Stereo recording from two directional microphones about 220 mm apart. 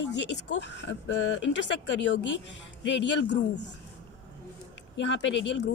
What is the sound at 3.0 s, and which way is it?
Speech, 55° left (ahead or behind).